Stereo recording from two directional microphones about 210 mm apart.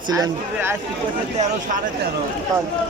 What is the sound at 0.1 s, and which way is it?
Speech, 15° right (ahead or behind).